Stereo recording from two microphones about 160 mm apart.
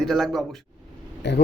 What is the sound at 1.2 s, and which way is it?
Speech, 90° left.